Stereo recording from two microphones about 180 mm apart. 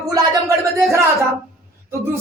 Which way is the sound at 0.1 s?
15° right (ahead or behind).